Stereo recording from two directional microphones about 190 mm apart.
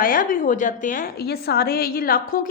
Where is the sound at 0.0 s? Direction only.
45° left (ahead or behind).